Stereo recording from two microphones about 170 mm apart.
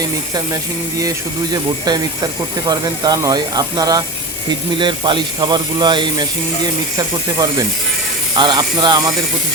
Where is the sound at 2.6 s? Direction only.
25° right (ahead or behind).